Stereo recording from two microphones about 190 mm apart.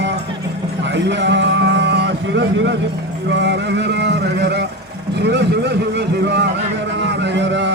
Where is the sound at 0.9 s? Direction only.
70° right (ahead or behind).